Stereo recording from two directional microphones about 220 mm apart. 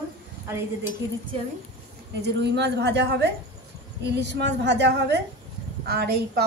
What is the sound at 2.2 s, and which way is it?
A woman's voice, 50° right (ahead or behind).